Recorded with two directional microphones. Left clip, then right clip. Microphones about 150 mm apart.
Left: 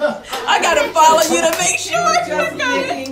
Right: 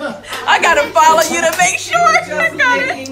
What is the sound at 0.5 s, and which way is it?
Speech, 25° left (ahead or behind).